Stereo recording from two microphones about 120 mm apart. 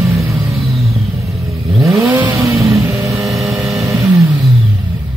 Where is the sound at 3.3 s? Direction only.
Centre (ahead or behind).